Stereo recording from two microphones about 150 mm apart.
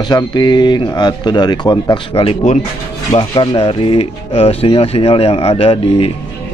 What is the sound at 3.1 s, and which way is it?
Speech, 30° left (ahead or behind).